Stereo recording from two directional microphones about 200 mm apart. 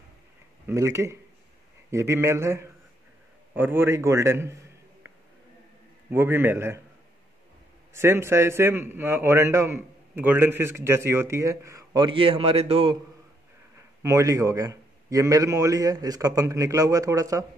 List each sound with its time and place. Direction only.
0.7 s a man's voice: 15° right (ahead or behind)
6.0 s a man's voice: 10° right (ahead or behind)
7.9 s a man's voice: 15° right (ahead or behind); by 12.9 s 30° right (ahead or behind)
14.0 s a man's voice: 15° right (ahead or behind)